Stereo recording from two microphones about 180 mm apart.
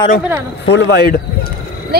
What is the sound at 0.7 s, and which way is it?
Speech, 65° left (ahead or behind).